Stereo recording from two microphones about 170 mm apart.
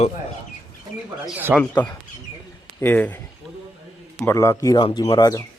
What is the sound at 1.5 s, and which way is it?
Speech, 10° left (ahead or behind).